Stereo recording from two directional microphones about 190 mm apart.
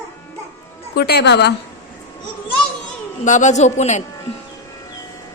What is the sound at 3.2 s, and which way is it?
Speech, 40° left (ahead or behind).